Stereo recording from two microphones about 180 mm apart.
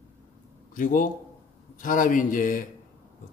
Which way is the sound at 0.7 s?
45° left (ahead or behind).